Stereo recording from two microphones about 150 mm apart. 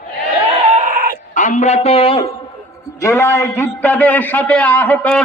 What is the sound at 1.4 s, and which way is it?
Speech, 55° left (ahead or behind).